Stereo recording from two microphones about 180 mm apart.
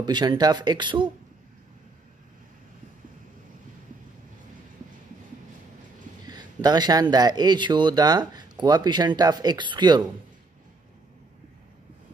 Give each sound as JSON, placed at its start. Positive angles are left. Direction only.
{"t": 0.0, "sound": "speech", "side_deg": -25}
{"t": 6.2, "sound": "speech", "side_deg": -20}